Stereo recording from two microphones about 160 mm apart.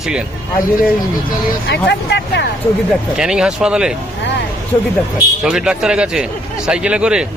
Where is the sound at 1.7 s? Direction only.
90° left.